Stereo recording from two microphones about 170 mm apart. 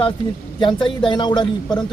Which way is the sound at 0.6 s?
25° left (ahead or behind).